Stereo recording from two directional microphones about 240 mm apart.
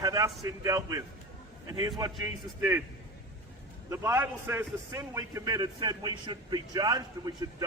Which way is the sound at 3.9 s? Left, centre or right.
Centre.